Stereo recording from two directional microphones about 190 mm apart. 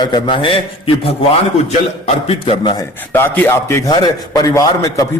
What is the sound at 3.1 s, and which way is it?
Speech, 10° left (ahead or behind).